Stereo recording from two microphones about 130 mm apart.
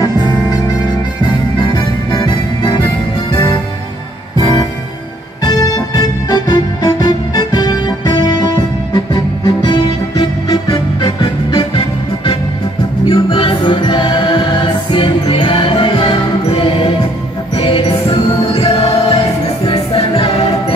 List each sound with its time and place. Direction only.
0.0 s music: 30° left (ahead or behind)
4.4 s music: 30° left (ahead or behind)
5.4 s organ: 30° left (ahead or behind)
8.9 s music: 30° left (ahead or behind)
13.0 s music: 40° left (ahead or behind)